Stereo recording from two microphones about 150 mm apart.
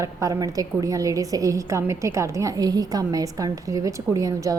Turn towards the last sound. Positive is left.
turn(degrees=-20)  # may be behind; listen again after turning